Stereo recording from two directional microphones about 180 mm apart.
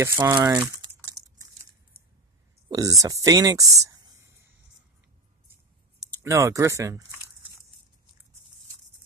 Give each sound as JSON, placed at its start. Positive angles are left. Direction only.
{"t": 0.0, "sound": "speech", "side_deg": -20}
{"t": 0.5, "sound": "typing", "side_deg": -5}
{"t": 1.1, "sound": "crumpling", "side_deg": -15}
{"t": 2.7, "sound": "speech", "side_deg": -20}
{"t": 6.2, "sound": "speech", "side_deg": -15}